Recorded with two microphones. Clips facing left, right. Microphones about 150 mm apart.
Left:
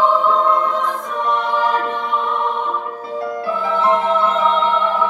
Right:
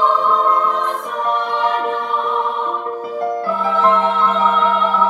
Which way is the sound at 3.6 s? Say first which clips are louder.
Right 1 dB; 45° right (ahead or behind).